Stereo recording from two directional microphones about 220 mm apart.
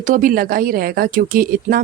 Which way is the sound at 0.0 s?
40° right (ahead or behind).